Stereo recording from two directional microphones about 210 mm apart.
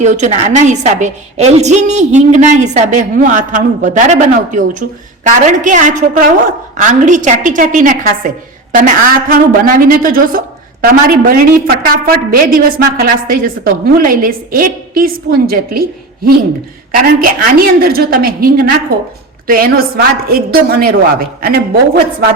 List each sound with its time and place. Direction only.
0.0 s a woman's voice: 35° right (ahead or behind)